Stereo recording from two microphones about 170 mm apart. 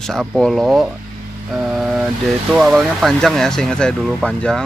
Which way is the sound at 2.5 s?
Centre (ahead or behind).